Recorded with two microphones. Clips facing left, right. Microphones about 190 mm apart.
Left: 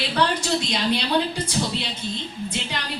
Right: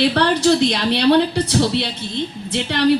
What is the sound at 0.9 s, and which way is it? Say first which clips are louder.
A woman's voice: right 8 dB; 65° right (ahead or behind).